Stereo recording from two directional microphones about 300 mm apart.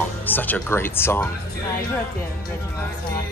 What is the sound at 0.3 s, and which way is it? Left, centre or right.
Speech, centre.